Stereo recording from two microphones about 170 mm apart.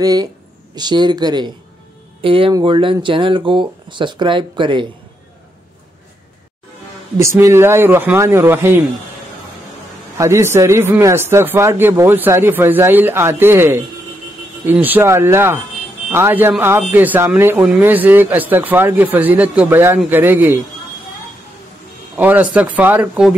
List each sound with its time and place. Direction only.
0.0 s speech: 20° right (ahead or behind)
7.2 s a man's voice: 15° right (ahead or behind)
10.1 s a man's voice: 15° right (ahead or behind)
22.1 s a man's voice: 10° right (ahead or behind)